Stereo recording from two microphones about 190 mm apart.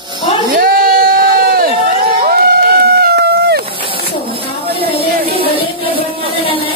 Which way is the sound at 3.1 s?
60° right (ahead or behind).